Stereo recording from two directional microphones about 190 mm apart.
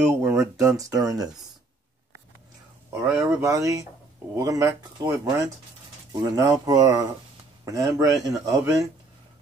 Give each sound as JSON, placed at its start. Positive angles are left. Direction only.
{"t": 0.1, "sound": "speech", "side_deg": -15}
{"t": 2.9, "sound": "speech", "side_deg": -15}